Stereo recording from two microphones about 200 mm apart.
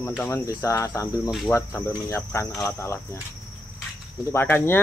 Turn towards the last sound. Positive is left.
turn(degrees=10)  # may be behind; listen again after turning